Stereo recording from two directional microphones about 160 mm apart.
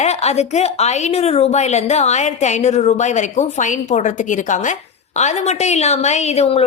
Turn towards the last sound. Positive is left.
turn(degrees=40)  # may be behind; listen again after turning